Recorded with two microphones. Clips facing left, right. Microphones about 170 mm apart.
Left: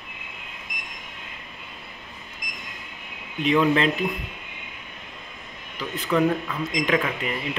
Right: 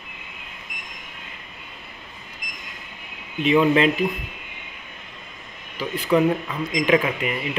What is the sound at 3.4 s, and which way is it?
Speech, 5° right (ahead or behind).